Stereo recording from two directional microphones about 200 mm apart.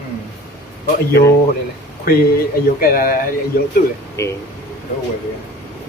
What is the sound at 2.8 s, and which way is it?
Speech, 45° left (ahead or behind).